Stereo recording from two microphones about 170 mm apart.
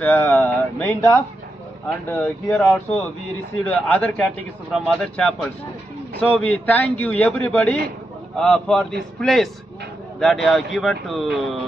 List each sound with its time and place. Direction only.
0.0 s a man's voice: 15° left (ahead or behind)